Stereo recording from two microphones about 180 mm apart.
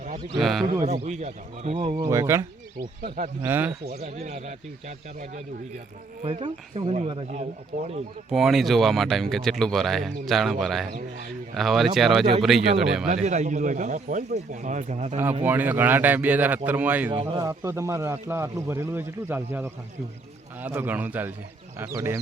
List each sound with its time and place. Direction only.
0.3 s speech: centre (ahead or behind)
0.6 s speech: 25° right (ahead or behind)
0.9 s speech: 40° right (ahead or behind)
2.0 s speech: 15° right (ahead or behind)
3.4 s speech: 10° right (ahead or behind)
3.8 s speech: 40° right (ahead or behind)
7.7 s speech: 55° right (ahead or behind)
8.3 s speech: centre (ahead or behind)
13.2 s speech: 40° right (ahead or behind)
15.4 s speech: 10° right (ahead or behind)
17.1 s speech: 25° right (ahead or behind)
17.4 s speech: 15° right (ahead or behind)